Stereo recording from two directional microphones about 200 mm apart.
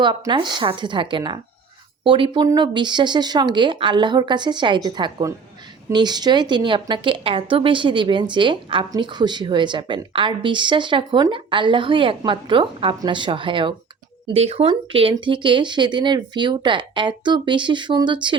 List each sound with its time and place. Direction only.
0.0 s a woman's voice: 25° right (ahead or behind)